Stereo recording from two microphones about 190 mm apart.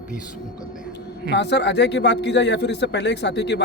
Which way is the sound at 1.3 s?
65° left (ahead or behind).